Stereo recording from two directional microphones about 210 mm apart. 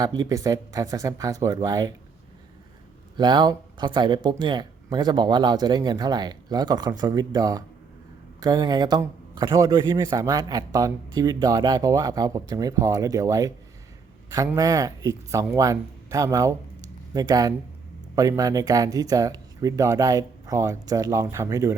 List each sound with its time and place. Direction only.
0.0 s a man's voice: 20° right (ahead or behind)
3.2 s a man's voice: 20° right (ahead or behind)